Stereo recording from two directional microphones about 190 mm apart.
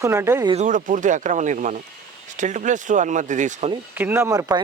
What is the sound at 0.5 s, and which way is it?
Speech, 40° right (ahead or behind).